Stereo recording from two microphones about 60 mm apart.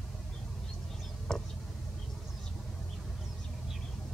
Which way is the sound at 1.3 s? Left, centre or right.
Centre.